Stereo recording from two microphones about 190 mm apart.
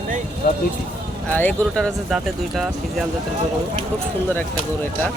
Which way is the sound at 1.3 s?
10° left (ahead or behind).